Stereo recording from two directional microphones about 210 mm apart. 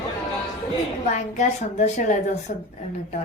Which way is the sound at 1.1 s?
35° left (ahead or behind).